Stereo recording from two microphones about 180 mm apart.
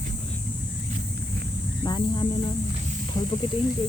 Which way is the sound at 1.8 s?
25° left (ahead or behind).